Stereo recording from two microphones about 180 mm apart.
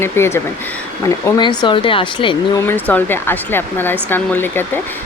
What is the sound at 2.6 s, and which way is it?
Speech, 10° left (ahead or behind).